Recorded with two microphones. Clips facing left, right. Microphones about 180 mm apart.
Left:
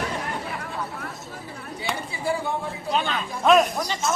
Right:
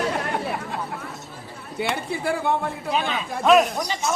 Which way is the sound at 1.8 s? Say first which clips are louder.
Right 4 dB; 60° right (ahead or behind).